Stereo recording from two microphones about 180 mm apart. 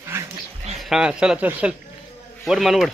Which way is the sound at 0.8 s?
5° right (ahead or behind).